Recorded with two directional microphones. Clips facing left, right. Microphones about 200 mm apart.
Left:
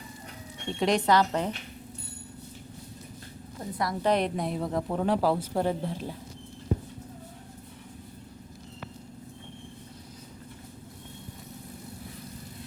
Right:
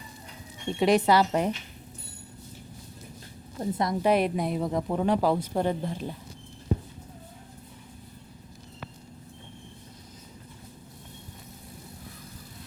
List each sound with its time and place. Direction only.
0.7 s speech: 5° right (ahead or behind)
3.6 s a woman's voice: 25° right (ahead or behind)
4.0 s speech: 5° right (ahead or behind)